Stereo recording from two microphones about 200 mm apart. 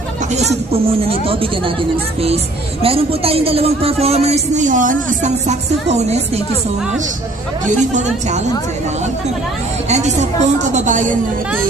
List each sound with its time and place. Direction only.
0.3 s speech: 30° right (ahead or behind)
2.8 s speech: 30° right (ahead or behind)
4.0 s music: 30° right (ahead or behind)
7.6 s music: 35° right (ahead or behind)
9.9 s music: 35° right (ahead or behind)